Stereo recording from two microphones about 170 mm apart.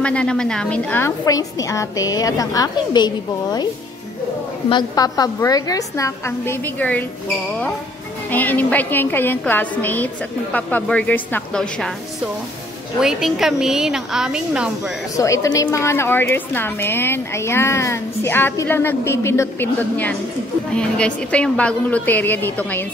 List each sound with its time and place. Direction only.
0.0 s a woman's voice: 5° left (ahead or behind); by 3.1 s 25° left (ahead or behind)
4.6 s a woman's voice: 25° left (ahead or behind)
8.3 s a woman's voice: 10° left (ahead or behind)
13.0 s a woman's voice: centre (ahead or behind)
15.1 s a woman's voice: 20° left (ahead or behind)